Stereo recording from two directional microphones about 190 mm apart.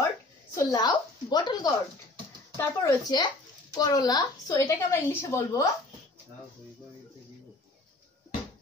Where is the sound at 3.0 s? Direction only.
20° left (ahead or behind).